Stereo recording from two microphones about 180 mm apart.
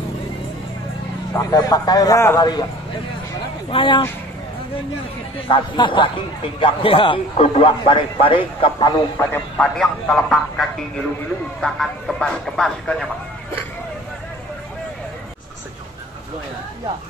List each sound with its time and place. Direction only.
1.3 s a man's voice: 20° left (ahead or behind)
3.7 s a man's voice: 25° left (ahead or behind)
5.5 s a man's voice: 25° left (ahead or behind)
9.2 s a man's voice: 10° left (ahead or behind)